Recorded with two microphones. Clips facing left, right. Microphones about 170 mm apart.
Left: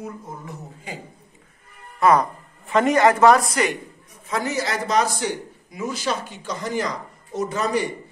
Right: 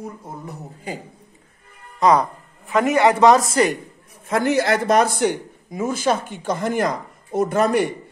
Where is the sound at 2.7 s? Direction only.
Centre (ahead or behind).